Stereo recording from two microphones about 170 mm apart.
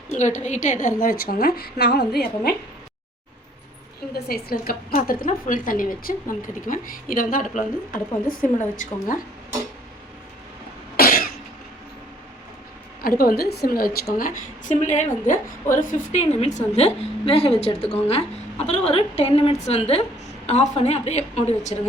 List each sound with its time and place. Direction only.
0.1 s a woman's voice: 45° left (ahead or behind); by 2.6 s 70° left (ahead or behind)
4.1 s a woman's voice: 65° left (ahead or behind)
10.9 s cough: 60° left (ahead or behind)
13.0 s a woman's voice: 60° left (ahead or behind); by 21.8 s 40° left (ahead or behind)